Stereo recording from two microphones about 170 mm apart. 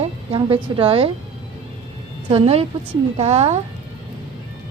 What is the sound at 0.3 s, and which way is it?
Speech, 30° right (ahead or behind).